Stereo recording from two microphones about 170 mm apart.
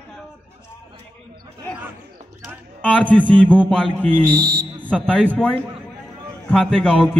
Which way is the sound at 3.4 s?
5° left (ahead or behind).